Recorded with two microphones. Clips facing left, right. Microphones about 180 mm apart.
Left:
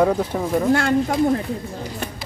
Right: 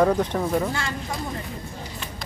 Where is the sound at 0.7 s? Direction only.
60° left (ahead or behind).